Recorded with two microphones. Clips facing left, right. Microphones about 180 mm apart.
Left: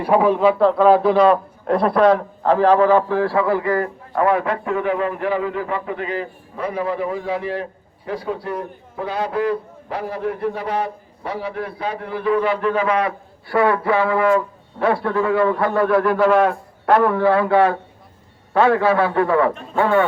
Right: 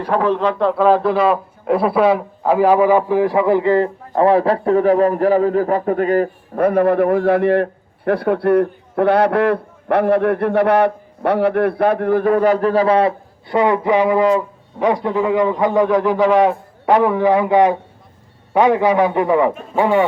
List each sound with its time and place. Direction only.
0.0 s a man's voice: 10° left (ahead or behind); by 20.1 s 15° right (ahead or behind)